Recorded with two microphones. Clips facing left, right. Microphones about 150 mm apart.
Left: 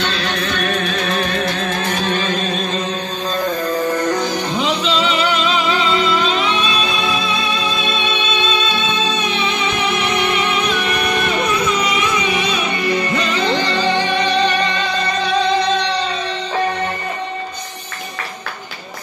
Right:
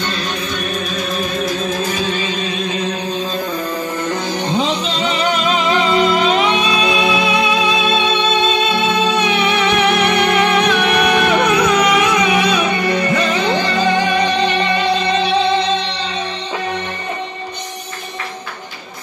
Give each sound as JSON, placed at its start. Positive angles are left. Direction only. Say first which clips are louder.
{"t": 0.0, "sound": "music", "louder": "left 1 dB", "side_deg": 85}
{"t": 0.8, "sound": "music", "louder": "left 2 dB", "side_deg": 0}
{"t": 1.1, "sound": "music", "louder": "even", "side_deg": 65}
{"t": 4.5, "sound": "music", "louder": "right 1 dB", "side_deg": -35}
{"t": 7.9, "sound": "music", "louder": "right 5 dB", "side_deg": -55}
{"t": 9.3, "sound": "music", "louder": "right 5 dB", "side_deg": -65}